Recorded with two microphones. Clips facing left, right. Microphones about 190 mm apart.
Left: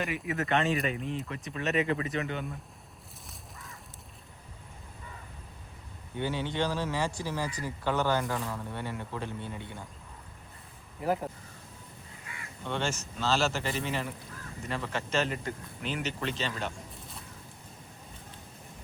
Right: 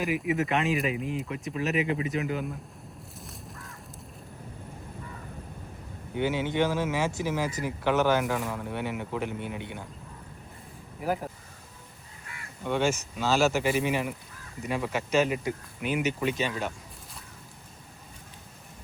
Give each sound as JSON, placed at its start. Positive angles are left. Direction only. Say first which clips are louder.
{"t": 0.0, "sound": "speech", "louder": "right 5 dB", "side_deg": 0}
{"t": 6.1, "sound": "speech", "louder": "right 5 dB", "side_deg": -15}
{"t": 8.2, "sound": "speech", "louder": "right 4 dB", "side_deg": -5}
{"t": 11.0, "sound": "speech", "louder": "even", "side_deg": -5}
{"t": 12.6, "sound": "speech", "louder": "right 6 dB", "side_deg": -10}